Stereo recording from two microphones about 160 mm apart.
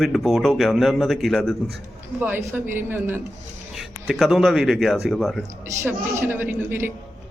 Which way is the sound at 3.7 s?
Centre (ahead or behind).